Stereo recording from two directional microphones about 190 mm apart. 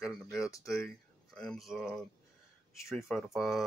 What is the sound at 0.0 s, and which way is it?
Speech, centre (ahead or behind).